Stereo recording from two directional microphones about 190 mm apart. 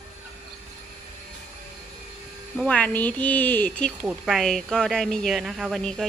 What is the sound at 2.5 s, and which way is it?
Speech, 5° left (ahead or behind).